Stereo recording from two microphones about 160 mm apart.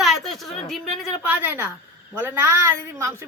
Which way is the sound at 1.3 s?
15° right (ahead or behind).